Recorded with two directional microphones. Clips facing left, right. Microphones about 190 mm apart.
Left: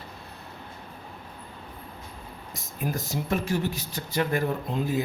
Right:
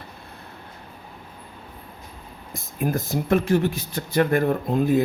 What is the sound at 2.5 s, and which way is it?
Speech, 55° right (ahead or behind).